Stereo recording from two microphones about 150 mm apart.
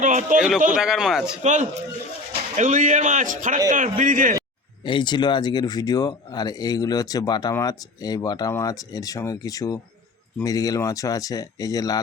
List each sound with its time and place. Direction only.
0.0 s a sound: 55° right (ahead or behind)
0.8 s a man's voice: 5° right (ahead or behind)
1.4 s speech: 55° right (ahead or behind)
4.9 s speech: 30° left (ahead or behind)